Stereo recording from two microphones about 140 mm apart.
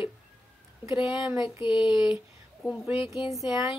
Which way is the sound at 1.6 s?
35° left (ahead or behind).